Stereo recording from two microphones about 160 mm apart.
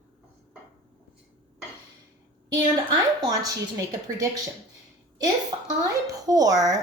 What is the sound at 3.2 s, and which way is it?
A woman's voice, 20° right (ahead or behind).